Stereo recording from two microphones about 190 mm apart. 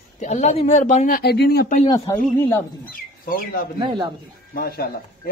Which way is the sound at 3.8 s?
25° right (ahead or behind).